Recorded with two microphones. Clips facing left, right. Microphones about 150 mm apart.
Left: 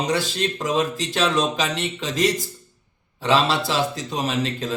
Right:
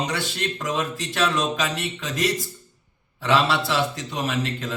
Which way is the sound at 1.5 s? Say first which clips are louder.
Left 1 dB; 25° left (ahead or behind).